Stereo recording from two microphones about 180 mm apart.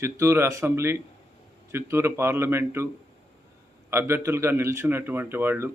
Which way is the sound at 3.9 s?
15° right (ahead or behind).